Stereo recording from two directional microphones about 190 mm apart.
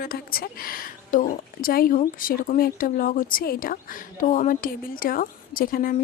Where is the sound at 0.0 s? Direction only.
50° left (ahead or behind).